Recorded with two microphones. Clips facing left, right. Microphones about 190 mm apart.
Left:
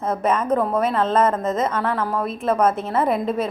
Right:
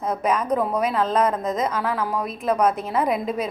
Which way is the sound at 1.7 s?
5° right (ahead or behind).